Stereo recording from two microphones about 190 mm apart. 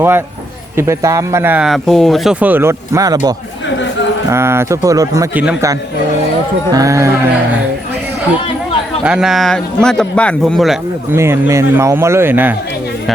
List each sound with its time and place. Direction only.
0.8 s speech: 15° right (ahead or behind)
9.0 s speech: 5° right (ahead or behind)
11.1 s speech: 15° right (ahead or behind)